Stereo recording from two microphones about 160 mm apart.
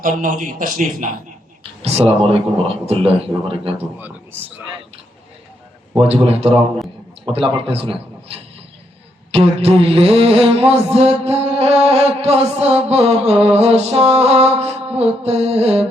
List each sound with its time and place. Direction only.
0.0 s a man's voice: 55° right (ahead or behind)
1.8 s mantra: 40° right (ahead or behind)
3.8 s a man's voice: 10° right (ahead or behind)
6.0 s mantra: 40° right (ahead or behind)